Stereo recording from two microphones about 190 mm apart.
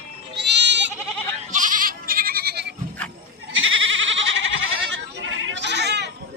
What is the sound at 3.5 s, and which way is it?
Goat, 90° right.